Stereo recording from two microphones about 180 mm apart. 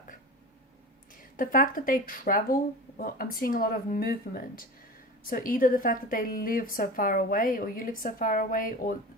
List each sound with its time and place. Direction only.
1.4 s a woman's voice: 50° left (ahead or behind)